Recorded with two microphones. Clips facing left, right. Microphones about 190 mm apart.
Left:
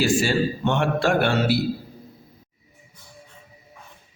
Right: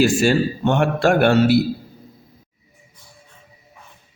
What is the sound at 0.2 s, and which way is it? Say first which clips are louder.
A man's voice: right 4 dB; 45° right (ahead or behind).